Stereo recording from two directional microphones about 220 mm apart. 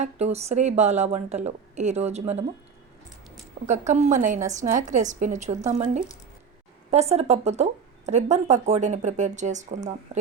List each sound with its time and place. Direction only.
0.0 s speech: 30° right (ahead or behind)
3.7 s speech: 30° right (ahead or behind)
6.9 s speech: 30° right (ahead or behind)